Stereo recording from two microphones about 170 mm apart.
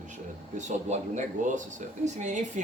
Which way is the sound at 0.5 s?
45° right (ahead or behind).